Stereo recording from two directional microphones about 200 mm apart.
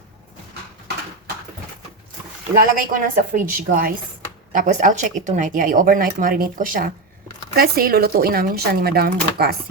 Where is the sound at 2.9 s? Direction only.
45° right (ahead or behind).